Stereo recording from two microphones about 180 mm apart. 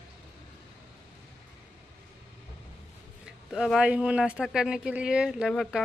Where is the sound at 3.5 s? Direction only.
5° right (ahead or behind).